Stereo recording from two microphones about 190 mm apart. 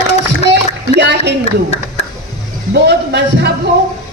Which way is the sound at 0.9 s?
65° right (ahead or behind).